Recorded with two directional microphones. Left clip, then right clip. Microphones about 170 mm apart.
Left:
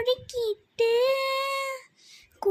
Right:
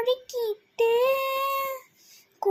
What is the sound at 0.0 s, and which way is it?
Child singing, 15° left (ahead or behind).